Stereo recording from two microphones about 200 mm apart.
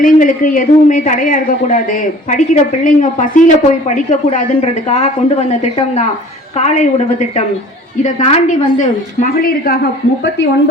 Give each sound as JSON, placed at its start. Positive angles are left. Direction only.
{"t": 0.0, "sound": "speech", "side_deg": 40}